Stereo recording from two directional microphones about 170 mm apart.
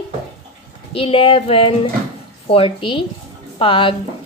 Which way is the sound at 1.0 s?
30° left (ahead or behind).